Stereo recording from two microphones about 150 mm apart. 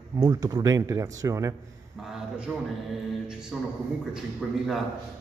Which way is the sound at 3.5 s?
Centre (ahead or behind).